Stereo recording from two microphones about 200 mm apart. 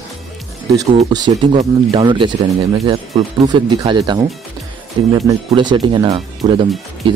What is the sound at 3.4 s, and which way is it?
Speech, 25° right (ahead or behind).